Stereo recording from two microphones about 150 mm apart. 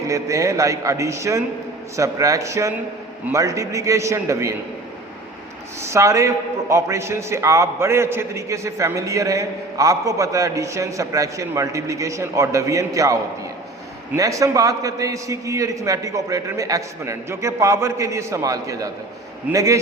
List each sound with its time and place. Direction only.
0.1 s a man's voice: 20° right (ahead or behind)
5.8 s a man's voice: 20° right (ahead or behind)
14.2 s a man's voice: 20° right (ahead or behind)